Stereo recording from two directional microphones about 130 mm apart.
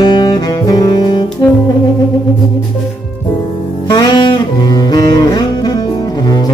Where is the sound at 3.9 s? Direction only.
35° left (ahead or behind).